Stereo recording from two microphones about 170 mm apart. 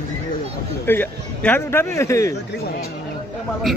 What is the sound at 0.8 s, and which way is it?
A man's voice, 10° left (ahead or behind).